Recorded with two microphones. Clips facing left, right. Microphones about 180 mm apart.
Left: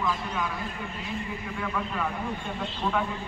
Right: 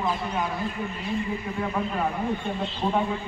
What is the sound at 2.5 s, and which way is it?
Speech, 30° right (ahead or behind).